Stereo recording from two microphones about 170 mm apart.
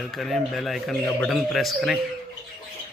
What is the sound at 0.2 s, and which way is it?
Speech, centre (ahead or behind).